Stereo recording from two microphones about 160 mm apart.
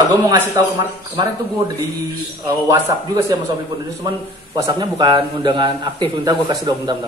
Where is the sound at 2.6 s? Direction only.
20° right (ahead or behind).